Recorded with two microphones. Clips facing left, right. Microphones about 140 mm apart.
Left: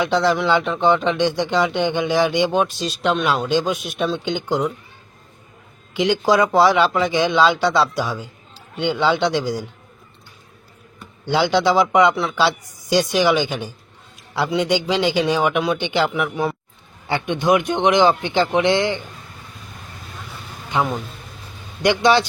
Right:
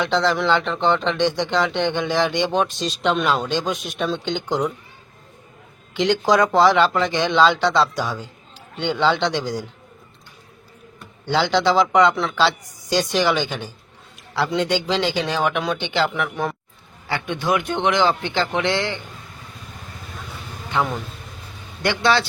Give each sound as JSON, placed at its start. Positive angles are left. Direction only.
{"t": 0.0, "sound": "speech", "side_deg": 10}
{"t": 5.9, "sound": "speech", "side_deg": 10}
{"t": 11.3, "sound": "speech", "side_deg": 10}
{"t": 17.1, "sound": "speech", "side_deg": 20}
{"t": 20.7, "sound": "speech", "side_deg": 15}